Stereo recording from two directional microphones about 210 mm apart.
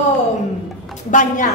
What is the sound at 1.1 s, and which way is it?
Speech, 40° left (ahead or behind).